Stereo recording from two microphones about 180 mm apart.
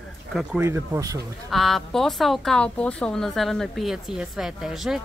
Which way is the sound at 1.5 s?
Centre (ahead or behind).